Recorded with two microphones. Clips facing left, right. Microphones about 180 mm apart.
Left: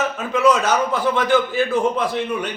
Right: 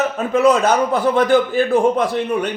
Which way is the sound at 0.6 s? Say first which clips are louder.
Right 4 dB; 55° right (ahead or behind).